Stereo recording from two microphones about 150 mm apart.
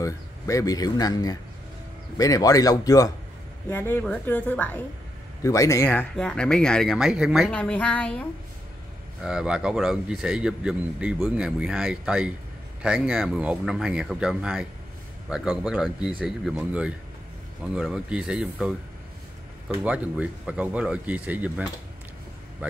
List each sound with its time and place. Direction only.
0.0 s speech: 20° left (ahead or behind)
3.7 s a woman's voice: 15° left (ahead or behind)
5.9 s speech: 5° left (ahead or behind)
7.5 s a woman's voice: 10° left (ahead or behind)
9.2 s speech: 5° right (ahead or behind)